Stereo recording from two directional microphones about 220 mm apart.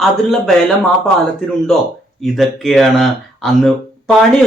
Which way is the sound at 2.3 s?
Centre (ahead or behind).